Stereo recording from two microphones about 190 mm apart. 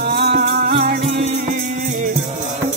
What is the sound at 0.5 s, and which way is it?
Music, 40° right (ahead or behind).